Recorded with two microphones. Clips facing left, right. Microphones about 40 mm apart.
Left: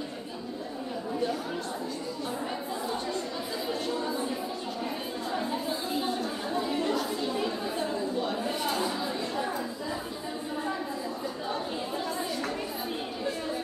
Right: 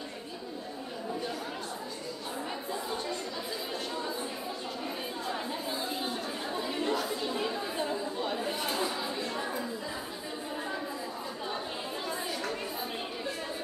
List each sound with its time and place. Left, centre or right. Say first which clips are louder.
6.7 s chatter: even; centre